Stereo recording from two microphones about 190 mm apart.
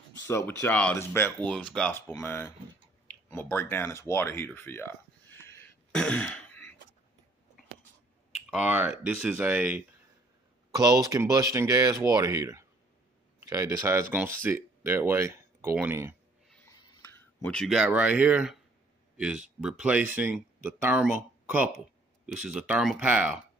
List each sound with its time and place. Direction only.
0.3 s speech: 15° left (ahead or behind)
3.1 s a sound: 10° left (ahead or behind)
8.5 s speech: 5° right (ahead or behind)
10.7 s speech: 20° right (ahead or behind)
16.4 s a sound: 5° left (ahead or behind)
17.4 s speech: 5° left (ahead or behind)